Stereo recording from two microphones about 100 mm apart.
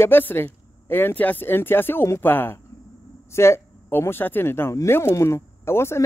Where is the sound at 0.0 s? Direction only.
20° left (ahead or behind).